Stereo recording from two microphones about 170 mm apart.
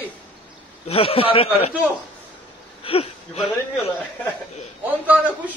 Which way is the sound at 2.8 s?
35° left (ahead or behind).